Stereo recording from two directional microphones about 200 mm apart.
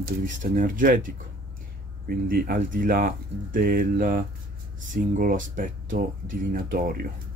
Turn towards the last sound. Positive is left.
turn(degrees=-45)  # may be behind; listen again after turning